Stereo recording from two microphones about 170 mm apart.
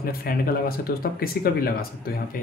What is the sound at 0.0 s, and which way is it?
Speech, 60° left (ahead or behind).